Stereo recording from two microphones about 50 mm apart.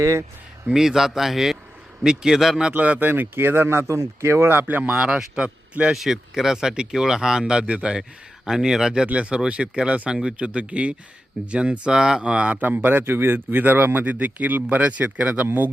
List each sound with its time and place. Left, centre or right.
0.0 s speech: right
0.7 s speech: centre
2.7 s speech: right
4.9 s speech: centre
5.9 s speech: centre
9.0 s speech: right
12.6 s speech: right